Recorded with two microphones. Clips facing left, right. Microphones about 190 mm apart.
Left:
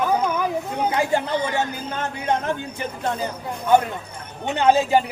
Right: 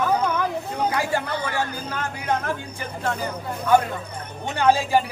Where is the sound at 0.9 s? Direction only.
20° left (ahead or behind).